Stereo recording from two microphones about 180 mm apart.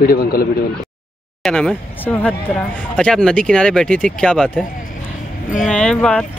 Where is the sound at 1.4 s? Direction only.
5° left (ahead or behind).